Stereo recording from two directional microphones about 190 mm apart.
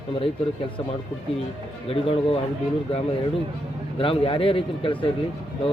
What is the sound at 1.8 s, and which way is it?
Speech, 30° left (ahead or behind).